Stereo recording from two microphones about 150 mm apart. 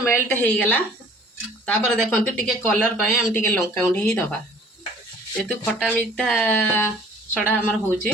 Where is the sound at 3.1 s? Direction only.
15° left (ahead or behind).